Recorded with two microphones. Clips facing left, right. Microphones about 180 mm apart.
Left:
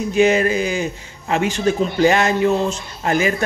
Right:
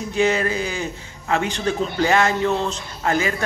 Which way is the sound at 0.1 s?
15° left (ahead or behind).